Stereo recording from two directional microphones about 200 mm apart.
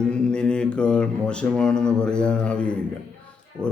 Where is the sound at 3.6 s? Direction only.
15° right (ahead or behind).